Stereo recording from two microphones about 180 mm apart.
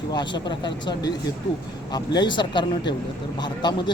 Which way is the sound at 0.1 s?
25° left (ahead or behind).